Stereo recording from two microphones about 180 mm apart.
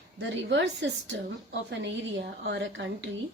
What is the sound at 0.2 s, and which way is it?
A woman's voice, 80° right.